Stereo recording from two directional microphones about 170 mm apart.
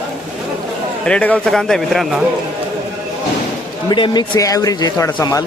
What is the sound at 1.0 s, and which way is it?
A man's voice, 5° left (ahead or behind).